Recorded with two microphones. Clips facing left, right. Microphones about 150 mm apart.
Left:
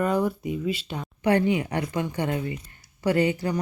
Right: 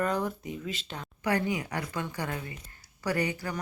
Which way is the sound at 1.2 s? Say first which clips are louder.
Left 7 dB; 25° left (ahead or behind).